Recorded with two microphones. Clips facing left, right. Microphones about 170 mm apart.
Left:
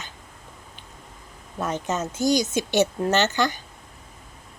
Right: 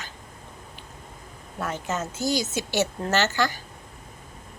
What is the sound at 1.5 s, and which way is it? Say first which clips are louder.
A woman's voice: left 3 dB; 20° left (ahead or behind).